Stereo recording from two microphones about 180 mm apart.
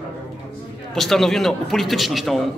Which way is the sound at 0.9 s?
Centre (ahead or behind).